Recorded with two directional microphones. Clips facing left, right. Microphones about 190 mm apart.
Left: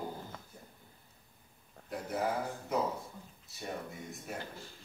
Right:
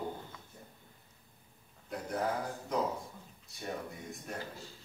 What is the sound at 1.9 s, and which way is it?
A man's voice, 5° left (ahead or behind).